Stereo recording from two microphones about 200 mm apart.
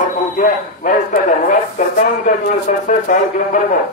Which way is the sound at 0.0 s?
40° left (ahead or behind).